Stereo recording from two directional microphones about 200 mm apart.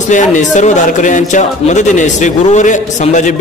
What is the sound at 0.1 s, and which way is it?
Speech, 40° left (ahead or behind).